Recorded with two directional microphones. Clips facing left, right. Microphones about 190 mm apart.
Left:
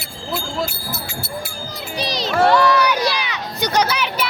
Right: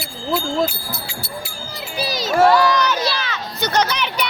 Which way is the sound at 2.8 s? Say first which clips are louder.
Left 2 dB; 15° left (ahead or behind).